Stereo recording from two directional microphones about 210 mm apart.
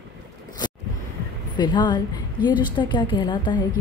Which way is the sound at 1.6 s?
20° left (ahead or behind).